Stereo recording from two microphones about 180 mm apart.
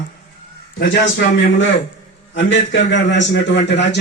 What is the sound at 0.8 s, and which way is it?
Speech, 70° left (ahead or behind).